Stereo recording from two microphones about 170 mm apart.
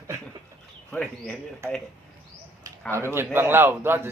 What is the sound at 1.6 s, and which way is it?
Speech, 15° right (ahead or behind).